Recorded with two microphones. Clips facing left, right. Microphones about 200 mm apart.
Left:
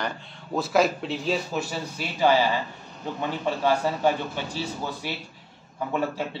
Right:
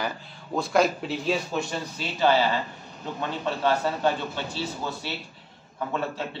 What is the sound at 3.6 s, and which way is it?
Speech, 10° left (ahead or behind).